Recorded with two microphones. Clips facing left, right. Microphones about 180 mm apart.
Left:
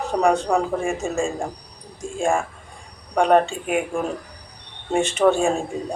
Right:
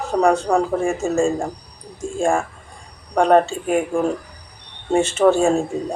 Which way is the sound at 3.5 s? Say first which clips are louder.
Right 3 dB; 40° right (ahead or behind).